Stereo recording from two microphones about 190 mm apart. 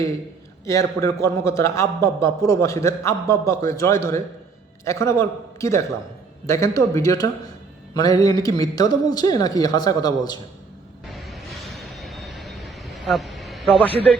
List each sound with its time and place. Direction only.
0.6 s a man's voice: 15° left (ahead or behind)
11.1 s vehicle: centre (ahead or behind)